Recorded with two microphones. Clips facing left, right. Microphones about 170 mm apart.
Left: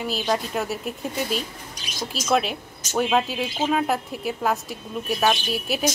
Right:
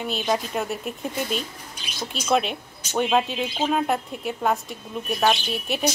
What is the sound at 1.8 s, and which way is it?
Speech, 40° left (ahead or behind).